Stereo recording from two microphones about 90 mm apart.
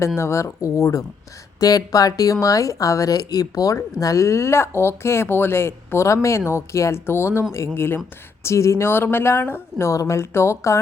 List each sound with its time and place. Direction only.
0.2 s speech: 30° left (ahead or behind)